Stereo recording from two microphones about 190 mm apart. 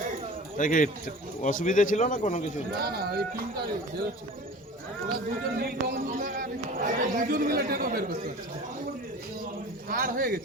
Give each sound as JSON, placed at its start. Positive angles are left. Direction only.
{"t": 0.5, "sound": "speech", "side_deg": 45}
{"t": 2.7, "sound": "speech", "side_deg": -55}
{"t": 5.5, "sound": "speech", "side_deg": -50}
{"t": 9.9, "sound": "speech", "side_deg": -45}